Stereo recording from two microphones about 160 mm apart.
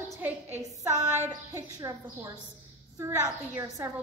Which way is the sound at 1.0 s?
50° right (ahead or behind).